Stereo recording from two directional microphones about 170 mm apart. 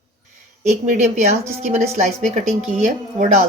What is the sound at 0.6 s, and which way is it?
Speech, 40° right (ahead or behind).